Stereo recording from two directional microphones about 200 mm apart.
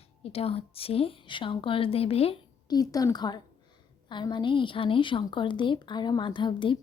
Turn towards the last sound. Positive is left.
turn(degrees=25)  # may be behind; listen again after turning